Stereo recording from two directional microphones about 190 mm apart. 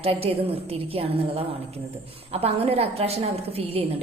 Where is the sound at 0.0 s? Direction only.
30° right (ahead or behind).